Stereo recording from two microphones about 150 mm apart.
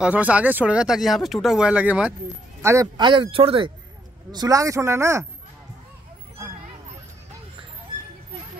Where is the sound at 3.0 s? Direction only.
35° right (ahead or behind).